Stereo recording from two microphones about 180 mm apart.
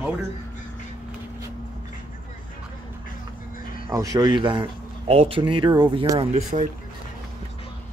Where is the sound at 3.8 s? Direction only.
20° right (ahead or behind).